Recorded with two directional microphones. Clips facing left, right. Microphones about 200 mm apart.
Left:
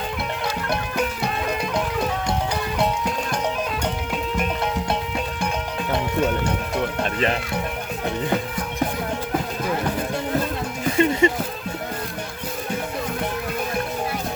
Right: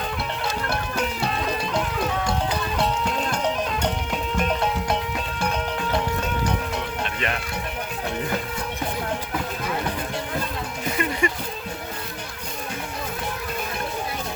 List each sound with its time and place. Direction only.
7.0 s music: 35° left (ahead or behind)
10.9 s music: 25° left (ahead or behind)